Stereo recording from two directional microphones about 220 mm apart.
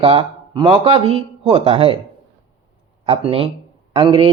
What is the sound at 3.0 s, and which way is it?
Speech, 25° right (ahead or behind).